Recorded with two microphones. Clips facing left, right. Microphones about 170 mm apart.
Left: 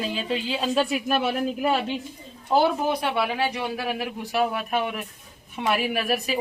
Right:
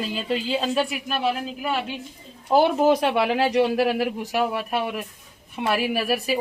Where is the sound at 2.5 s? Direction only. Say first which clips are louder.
Right 3 dB; 5° right (ahead or behind).